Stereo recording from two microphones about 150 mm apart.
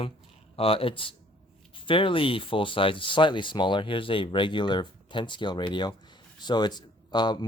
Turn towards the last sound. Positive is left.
turn(degrees=30)  # may be behind; listen again after turning